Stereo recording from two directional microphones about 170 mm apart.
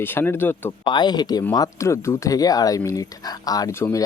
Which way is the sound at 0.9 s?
25° left (ahead or behind).